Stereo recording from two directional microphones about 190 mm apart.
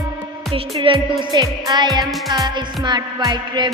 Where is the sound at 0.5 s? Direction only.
30° right (ahead or behind).